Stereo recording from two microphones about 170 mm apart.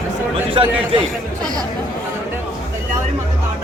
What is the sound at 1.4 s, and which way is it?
Chatter, 25° right (ahead or behind).